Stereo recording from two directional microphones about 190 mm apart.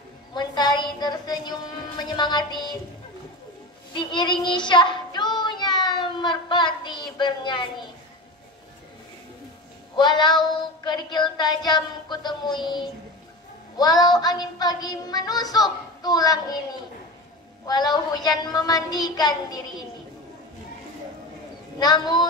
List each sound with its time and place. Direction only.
0.3 s a woman's voice: 20° left (ahead or behind)
3.9 s child singing: 25° left (ahead or behind)
9.9 s child singing: 25° left (ahead or behind)
17.6 s child singing: 20° left (ahead or behind)
21.7 s child singing: 20° left (ahead or behind)